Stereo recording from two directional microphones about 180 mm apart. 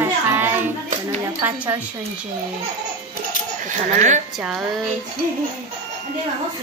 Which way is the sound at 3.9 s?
40° right (ahead or behind).